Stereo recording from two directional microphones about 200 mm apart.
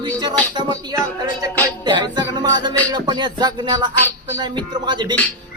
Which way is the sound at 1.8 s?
20° right (ahead or behind).